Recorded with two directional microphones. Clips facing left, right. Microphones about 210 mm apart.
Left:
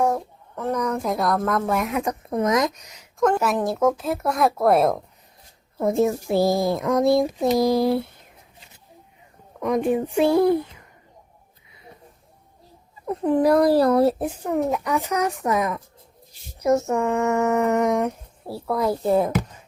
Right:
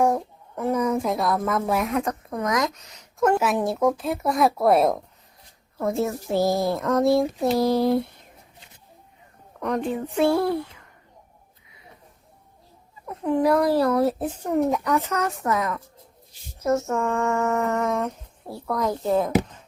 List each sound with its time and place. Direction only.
0.0 s a sound: 10° right (ahead or behind)
2.3 s speech: 25° left (ahead or behind)
3.2 s speech: centre (ahead or behind)
5.8 s speech: 15° left (ahead or behind)
9.6 s speech: 10° left (ahead or behind)
13.1 s speech: 35° left (ahead or behind)
14.2 s speech: 5° left (ahead or behind)
14.9 s speech: 15° left (ahead or behind)
18.4 s speech: 5° left (ahead or behind)